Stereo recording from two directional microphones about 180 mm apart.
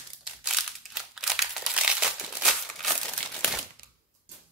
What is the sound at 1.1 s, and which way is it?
Crumpling, centre (ahead or behind).